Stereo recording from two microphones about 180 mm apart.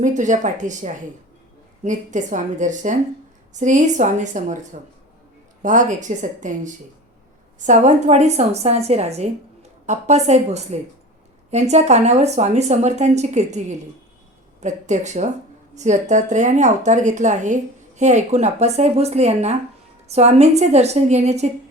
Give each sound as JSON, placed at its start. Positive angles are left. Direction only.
{"t": 0.0, "sound": "a woman's voice", "side_deg": -45}